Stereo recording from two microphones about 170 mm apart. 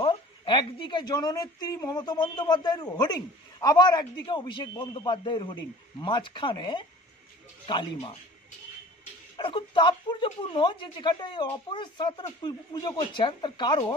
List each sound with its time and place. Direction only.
0.0 s speech: 30° left (ahead or behind)
9.4 s speech: 30° left (ahead or behind)